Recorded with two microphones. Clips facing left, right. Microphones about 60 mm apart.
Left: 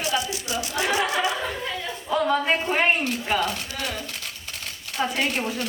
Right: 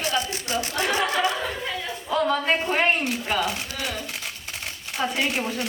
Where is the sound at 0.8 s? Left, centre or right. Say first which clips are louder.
Even; centre.